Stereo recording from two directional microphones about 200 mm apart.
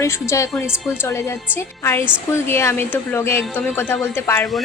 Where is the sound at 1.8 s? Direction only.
15° left (ahead or behind).